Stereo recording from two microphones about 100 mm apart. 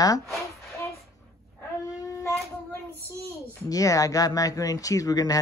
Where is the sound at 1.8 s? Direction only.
35° left (ahead or behind).